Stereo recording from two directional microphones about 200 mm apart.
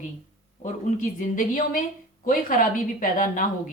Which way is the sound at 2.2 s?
45° left (ahead or behind).